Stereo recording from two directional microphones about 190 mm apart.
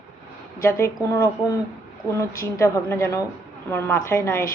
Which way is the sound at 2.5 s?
15° left (ahead or behind).